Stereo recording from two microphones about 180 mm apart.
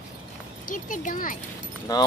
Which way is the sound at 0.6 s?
45° left (ahead or behind).